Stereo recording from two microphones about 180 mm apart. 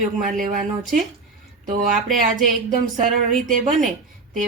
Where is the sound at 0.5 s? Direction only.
45° right (ahead or behind).